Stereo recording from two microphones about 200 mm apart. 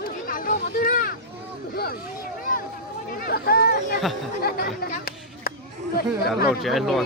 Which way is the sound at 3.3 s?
50° left (ahead or behind).